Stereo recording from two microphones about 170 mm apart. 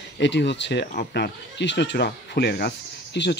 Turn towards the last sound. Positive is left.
turn(degrees=90)